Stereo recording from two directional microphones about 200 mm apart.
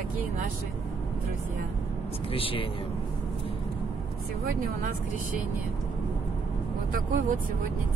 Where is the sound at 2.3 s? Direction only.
25° left (ahead or behind).